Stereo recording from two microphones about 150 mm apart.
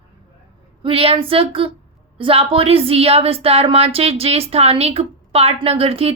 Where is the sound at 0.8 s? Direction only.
40° right (ahead or behind).